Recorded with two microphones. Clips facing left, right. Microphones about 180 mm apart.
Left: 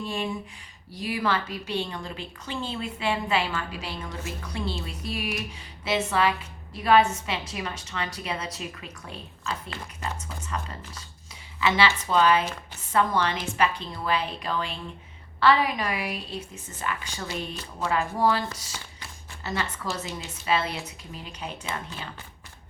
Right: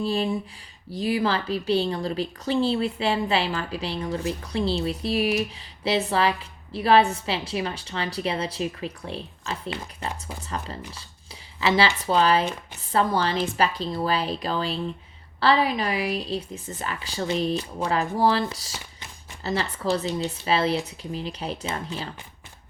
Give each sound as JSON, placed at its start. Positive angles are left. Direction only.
{"t": 0.0, "sound": "a woman's voice", "side_deg": -35}
{"t": 12.0, "sound": "a woman's voice", "side_deg": -30}